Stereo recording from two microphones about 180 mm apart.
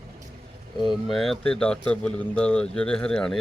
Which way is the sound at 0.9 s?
Centre (ahead or behind).